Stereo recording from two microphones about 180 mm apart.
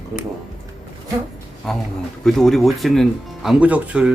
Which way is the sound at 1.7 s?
Centre (ahead or behind).